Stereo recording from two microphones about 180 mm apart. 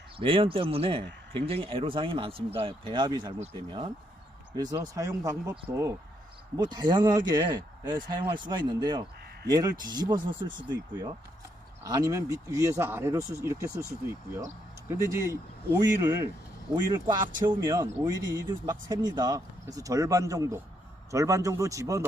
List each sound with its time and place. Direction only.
0.2 s speech: 30° right (ahead or behind)
11.8 s speech: 20° right (ahead or behind)